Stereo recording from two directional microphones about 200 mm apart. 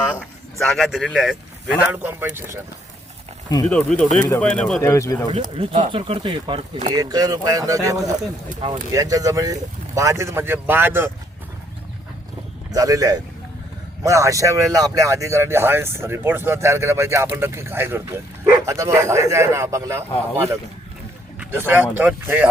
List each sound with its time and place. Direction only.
0.2 s speech: centre (ahead or behind)
3.7 s speech: 5° left (ahead or behind)
4.8 s speech: 15° left (ahead or behind)
5.3 s speech: 30° right (ahead or behind)
6.9 s speech: 20° right (ahead or behind)
12.7 s speech: 15° right (ahead or behind)
21.7 s speech: 10° right (ahead or behind)